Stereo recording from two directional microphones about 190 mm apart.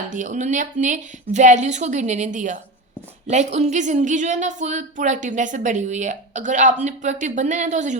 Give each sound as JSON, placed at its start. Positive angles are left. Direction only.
{"t": 0.1, "sound": "speech", "side_deg": -40}